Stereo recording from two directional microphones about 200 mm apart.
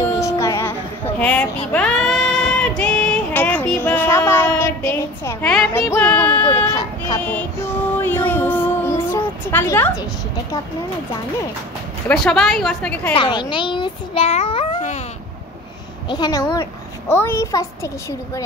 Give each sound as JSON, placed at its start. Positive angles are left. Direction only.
{"t": 0.2, "sound": "music", "side_deg": 15}
{"t": 6.5, "sound": "speech", "side_deg": 20}
{"t": 8.0, "sound": "a sound", "side_deg": 10}
{"t": 12.1, "sound": "a woman's voice", "side_deg": 5}
{"t": 13.1, "sound": "a child's voice", "side_deg": 25}
{"t": 16.1, "sound": "a child's voice", "side_deg": 20}